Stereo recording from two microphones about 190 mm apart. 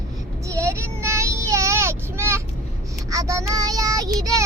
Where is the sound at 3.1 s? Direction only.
15° right (ahead or behind).